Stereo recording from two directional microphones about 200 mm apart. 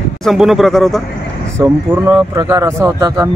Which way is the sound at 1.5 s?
15° right (ahead or behind).